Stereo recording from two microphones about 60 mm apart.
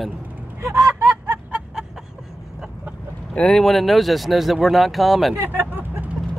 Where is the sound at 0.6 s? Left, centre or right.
Right.